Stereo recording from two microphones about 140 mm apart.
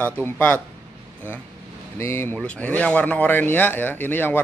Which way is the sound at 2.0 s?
20° left (ahead or behind).